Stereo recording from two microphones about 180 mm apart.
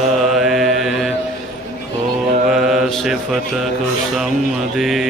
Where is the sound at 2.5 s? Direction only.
Centre (ahead or behind).